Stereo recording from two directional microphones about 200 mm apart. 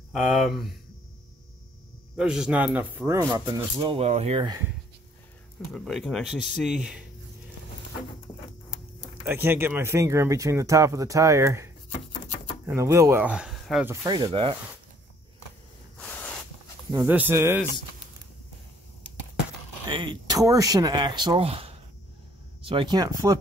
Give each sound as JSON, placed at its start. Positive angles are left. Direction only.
{"t": 0.1, "sound": "speech", "side_deg": 0}
{"t": 2.1, "sound": "speech", "side_deg": -5}
{"t": 5.8, "sound": "speech", "side_deg": 0}
{"t": 9.0, "sound": "speech", "side_deg": -10}
{"t": 14.0, "sound": "speech", "side_deg": -20}
{"t": 16.0, "sound": "a sound", "side_deg": 10}
{"t": 16.9, "sound": "speech", "side_deg": -10}
{"t": 19.9, "sound": "speech", "side_deg": -25}